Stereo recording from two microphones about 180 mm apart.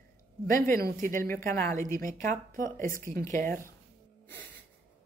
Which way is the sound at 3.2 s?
50° right (ahead or behind).